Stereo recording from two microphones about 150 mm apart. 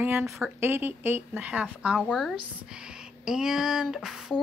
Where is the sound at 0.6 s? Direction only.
15° right (ahead or behind).